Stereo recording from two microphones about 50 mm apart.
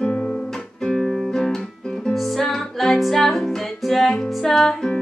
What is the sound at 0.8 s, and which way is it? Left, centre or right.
Music, centre.